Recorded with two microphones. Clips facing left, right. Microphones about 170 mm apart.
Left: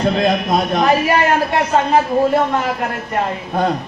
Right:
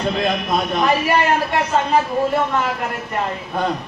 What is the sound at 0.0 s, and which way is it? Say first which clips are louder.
A woman's voice: left 4 dB; 40° left (ahead or behind).